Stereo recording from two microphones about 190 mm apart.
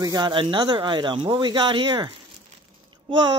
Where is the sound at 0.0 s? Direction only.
20° right (ahead or behind).